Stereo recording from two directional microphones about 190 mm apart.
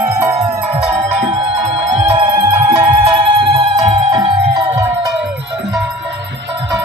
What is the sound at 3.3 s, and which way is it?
Music, 30° right (ahead or behind).